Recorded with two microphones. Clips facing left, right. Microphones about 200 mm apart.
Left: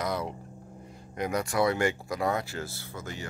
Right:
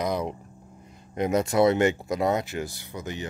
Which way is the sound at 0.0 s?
20° right (ahead or behind).